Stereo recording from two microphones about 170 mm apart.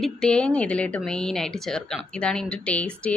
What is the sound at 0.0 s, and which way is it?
A woman's voice, 5° left (ahead or behind).